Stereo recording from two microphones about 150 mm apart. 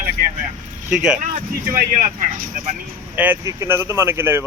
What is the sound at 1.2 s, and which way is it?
Speech, 55° right (ahead or behind).